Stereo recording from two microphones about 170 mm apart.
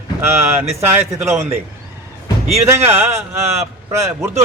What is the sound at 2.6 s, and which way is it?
Speech, 15° right (ahead or behind).